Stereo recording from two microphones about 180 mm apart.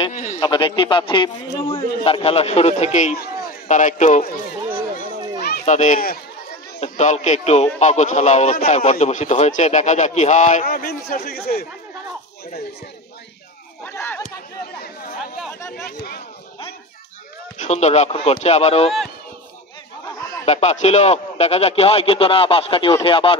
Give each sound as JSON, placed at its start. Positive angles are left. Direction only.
{"t": 0.1, "sound": "a man's voice", "side_deg": 45}
{"t": 0.4, "sound": "a man's voice", "side_deg": 25}
{"t": 5.0, "sound": "children playing", "side_deg": -25}
{"t": 5.7, "sound": "a man's voice", "side_deg": 45}
{"t": 6.8, "sound": "a man's voice", "side_deg": 40}
{"t": 13.8, "sound": "speech", "side_deg": 10}
{"t": 15.7, "sound": "speech", "side_deg": 55}
{"t": 17.6, "sound": "a man's voice", "side_deg": 40}
{"t": 20.4, "sound": "a man's voice", "side_deg": 40}